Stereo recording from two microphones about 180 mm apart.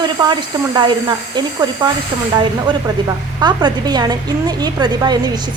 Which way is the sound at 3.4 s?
25° right (ahead or behind).